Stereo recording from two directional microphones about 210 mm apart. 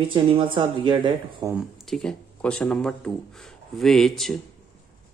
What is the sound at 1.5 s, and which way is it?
Speech, centre (ahead or behind).